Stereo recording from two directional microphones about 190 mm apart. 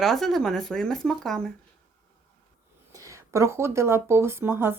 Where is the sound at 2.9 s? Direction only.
15° right (ahead or behind).